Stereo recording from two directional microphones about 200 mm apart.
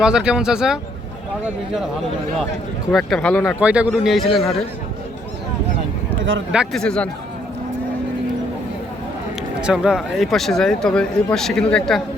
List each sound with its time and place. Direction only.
0.0 s speech: 5° right (ahead or behind)
2.9 s speech: centre (ahead or behind)
3.6 s speech: 5° right (ahead or behind)
6.5 s speech: centre (ahead or behind)
9.6 s speech: 5° right (ahead or behind)